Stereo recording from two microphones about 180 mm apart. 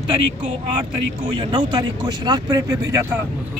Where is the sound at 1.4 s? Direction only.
25° right (ahead or behind).